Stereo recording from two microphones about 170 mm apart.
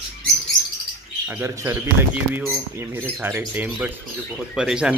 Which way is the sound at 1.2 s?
10° right (ahead or behind).